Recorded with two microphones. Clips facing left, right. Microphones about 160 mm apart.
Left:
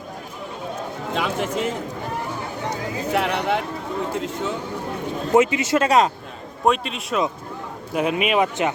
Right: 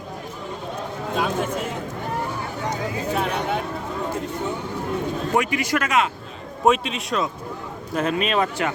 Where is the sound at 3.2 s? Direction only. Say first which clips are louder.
Left 4 dB; 75° left (ahead or behind).